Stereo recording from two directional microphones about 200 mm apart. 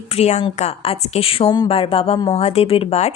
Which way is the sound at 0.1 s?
30° left (ahead or behind).